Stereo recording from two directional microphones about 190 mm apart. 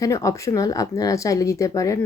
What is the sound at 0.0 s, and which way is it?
Speech, 15° left (ahead or behind).